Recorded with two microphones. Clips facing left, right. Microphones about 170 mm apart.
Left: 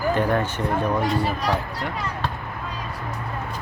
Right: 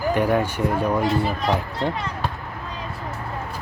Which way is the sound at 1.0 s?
25° right (ahead or behind).